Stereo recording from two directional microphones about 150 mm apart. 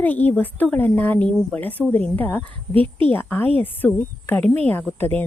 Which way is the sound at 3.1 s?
15° left (ahead or behind).